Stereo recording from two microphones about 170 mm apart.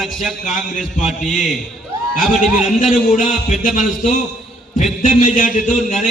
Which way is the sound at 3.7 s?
50° left (ahead or behind).